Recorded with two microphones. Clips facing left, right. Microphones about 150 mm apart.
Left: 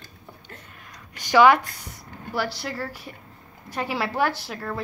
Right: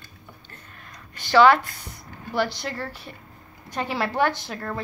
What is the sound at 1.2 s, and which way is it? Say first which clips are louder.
A woman's voice: even; 15° left (ahead or behind).